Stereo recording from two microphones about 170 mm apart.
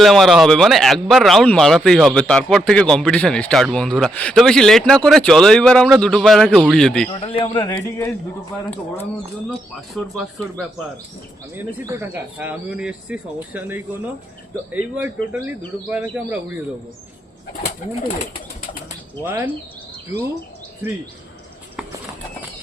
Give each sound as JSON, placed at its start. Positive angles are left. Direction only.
{"t": 0.0, "sound": "speech", "side_deg": 0}
{"t": 7.1, "sound": "a man's voice", "side_deg": 35}
{"t": 7.9, "sound": "a man's voice", "side_deg": 15}
{"t": 9.5, "sound": "speech", "side_deg": 0}
{"t": 11.5, "sound": "speech", "side_deg": -15}
{"t": 19.2, "sound": "speech", "side_deg": -10}